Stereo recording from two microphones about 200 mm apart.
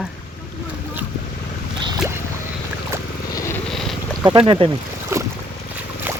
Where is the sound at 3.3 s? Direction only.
15° left (ahead or behind).